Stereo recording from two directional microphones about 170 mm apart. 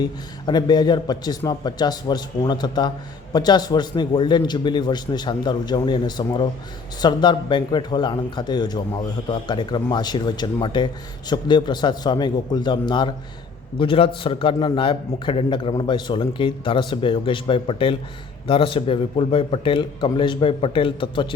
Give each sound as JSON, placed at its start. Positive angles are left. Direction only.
{"t": 0.0, "sound": "a man's voice", "side_deg": 25}